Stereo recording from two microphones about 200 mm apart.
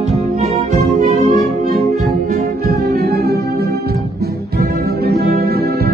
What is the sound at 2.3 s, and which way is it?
Music, 45° right (ahead or behind).